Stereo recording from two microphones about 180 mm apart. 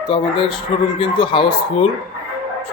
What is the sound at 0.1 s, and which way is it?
Speech, 25° left (ahead or behind).